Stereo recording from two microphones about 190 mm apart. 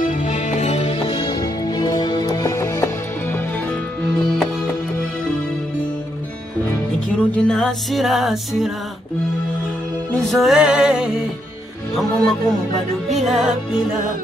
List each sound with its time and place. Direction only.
0.0 s music: 40° left (ahead or behind); by 2.9 s 15° left (ahead or behind)
7.1 s music: 5° left (ahead or behind)
10.2 s music: centre (ahead or behind)